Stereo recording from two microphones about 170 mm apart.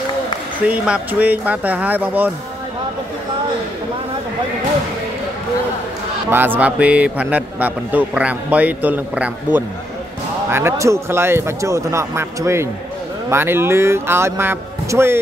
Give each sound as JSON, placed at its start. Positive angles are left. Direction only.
{"t": 0.7, "sound": "a man's voice", "side_deg": -5}
{"t": 6.3, "sound": "a man's voice", "side_deg": -10}